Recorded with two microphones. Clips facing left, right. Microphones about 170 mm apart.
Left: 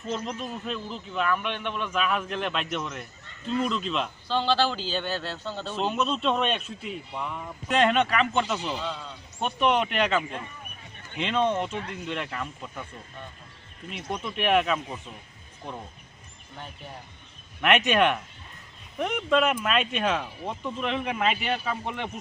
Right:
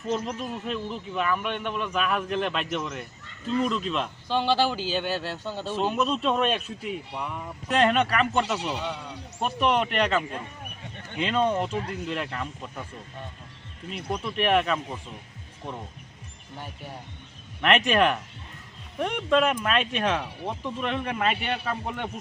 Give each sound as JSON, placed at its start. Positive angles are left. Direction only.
{"t": 0.4, "sound": "speech", "side_deg": -5}
{"t": 4.3, "sound": "speech", "side_deg": -15}
{"t": 5.7, "sound": "speech", "side_deg": 0}
{"t": 11.7, "sound": "speech", "side_deg": -35}
{"t": 12.0, "sound": "speech", "side_deg": 0}
{"t": 13.9, "sound": "speech", "side_deg": 0}
{"t": 17.6, "sound": "speech", "side_deg": 5}